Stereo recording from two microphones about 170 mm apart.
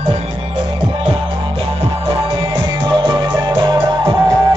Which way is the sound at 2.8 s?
25° right (ahead or behind).